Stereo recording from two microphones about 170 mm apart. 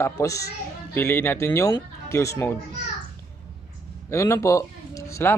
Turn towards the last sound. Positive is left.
turn(degrees=15)  # may be behind; listen again after turning